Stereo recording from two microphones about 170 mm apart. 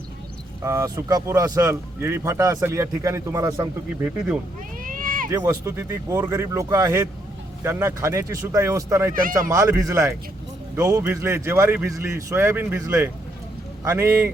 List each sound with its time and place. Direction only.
0.6 s speech: 15° right (ahead or behind)
4.8 s cat: 55° right (ahead or behind)
5.3 s speech: 20° right (ahead or behind)